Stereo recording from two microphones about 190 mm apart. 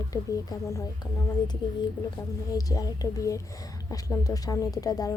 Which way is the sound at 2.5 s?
20° left (ahead or behind).